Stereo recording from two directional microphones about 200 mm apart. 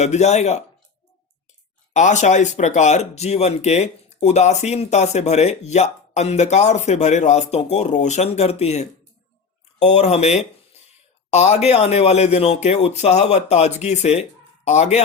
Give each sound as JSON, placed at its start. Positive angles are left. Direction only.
{"t": 0.0, "sound": "speech", "side_deg": 35}
{"t": 1.9, "sound": "speech", "side_deg": 35}